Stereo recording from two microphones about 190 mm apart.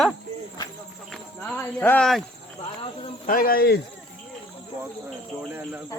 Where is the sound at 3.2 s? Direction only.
50° left (ahead or behind).